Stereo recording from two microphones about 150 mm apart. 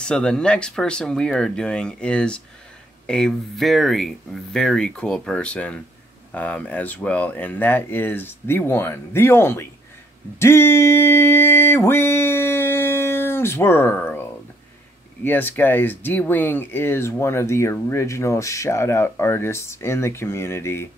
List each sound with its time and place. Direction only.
0.0 s speech: 5° left (ahead or behind)
10.4 s a sound: 15° left (ahead or behind)
15.2 s speech: 15° left (ahead or behind)